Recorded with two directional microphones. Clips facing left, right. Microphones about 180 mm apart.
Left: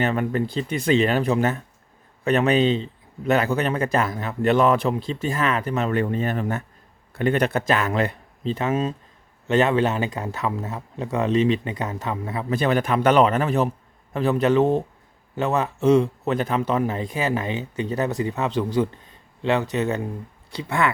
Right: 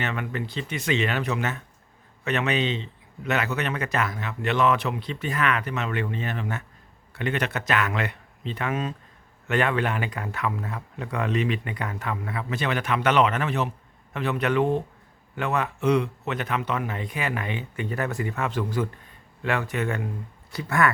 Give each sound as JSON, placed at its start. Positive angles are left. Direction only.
{"t": 0.0, "sound": "a man's voice", "side_deg": 35}
{"t": 16.0, "sound": "speech", "side_deg": 35}